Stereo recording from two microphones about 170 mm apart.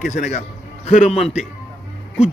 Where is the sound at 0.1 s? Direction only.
45° left (ahead or behind).